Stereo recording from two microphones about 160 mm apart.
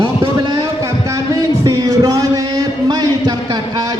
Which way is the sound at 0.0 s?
25° right (ahead or behind).